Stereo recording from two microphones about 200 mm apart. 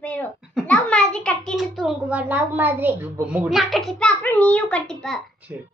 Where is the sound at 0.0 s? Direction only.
10° left (ahead or behind).